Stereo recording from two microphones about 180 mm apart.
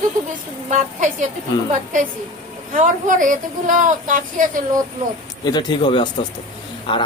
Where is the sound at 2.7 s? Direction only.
45° right (ahead or behind).